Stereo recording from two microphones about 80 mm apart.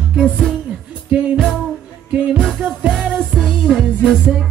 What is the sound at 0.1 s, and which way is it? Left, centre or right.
Music, centre.